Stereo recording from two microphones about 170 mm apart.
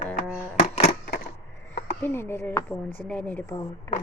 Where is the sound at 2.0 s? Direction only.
15° left (ahead or behind).